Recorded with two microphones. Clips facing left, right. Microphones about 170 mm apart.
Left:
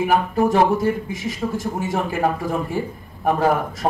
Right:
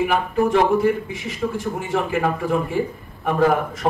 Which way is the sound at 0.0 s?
40° left (ahead or behind).